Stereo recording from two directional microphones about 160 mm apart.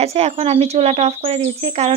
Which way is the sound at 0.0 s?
40° right (ahead or behind).